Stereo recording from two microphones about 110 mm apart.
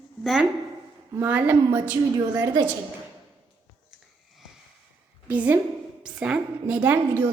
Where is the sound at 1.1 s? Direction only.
15° right (ahead or behind).